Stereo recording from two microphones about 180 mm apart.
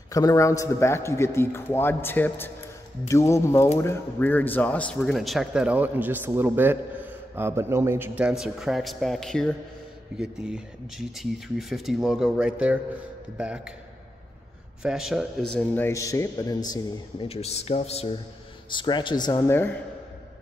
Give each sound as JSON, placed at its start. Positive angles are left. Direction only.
{"t": 0.1, "sound": "speech", "side_deg": 20}
{"t": 14.8, "sound": "speech", "side_deg": 0}
{"t": 17.3, "sound": "speech", "side_deg": 35}